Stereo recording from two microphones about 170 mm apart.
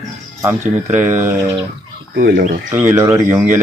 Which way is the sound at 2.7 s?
15° right (ahead or behind).